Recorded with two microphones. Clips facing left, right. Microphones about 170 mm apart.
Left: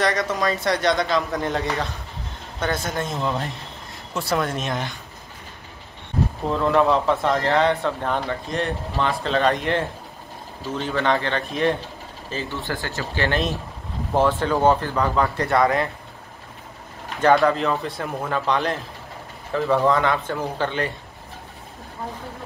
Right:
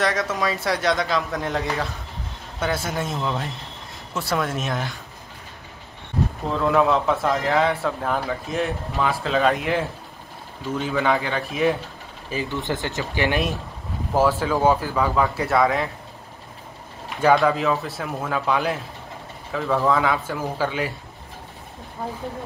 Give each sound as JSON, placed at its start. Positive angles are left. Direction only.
{"t": 0.0, "sound": "a man's voice", "side_deg": 0}
{"t": 6.5, "sound": "a man's voice", "side_deg": 0}
{"t": 17.2, "sound": "a man's voice", "side_deg": -5}